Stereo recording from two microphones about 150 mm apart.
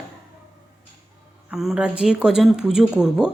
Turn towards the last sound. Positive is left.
turn(degrees=-5)  # may be behind; listen again after turning